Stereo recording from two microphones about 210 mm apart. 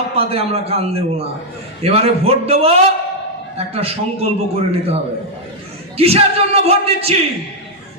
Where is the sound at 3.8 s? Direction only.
30° right (ahead or behind).